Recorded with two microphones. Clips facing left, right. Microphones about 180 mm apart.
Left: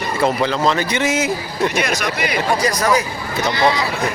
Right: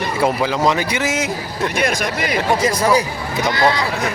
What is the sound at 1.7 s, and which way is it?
Speech, 50° right (ahead or behind).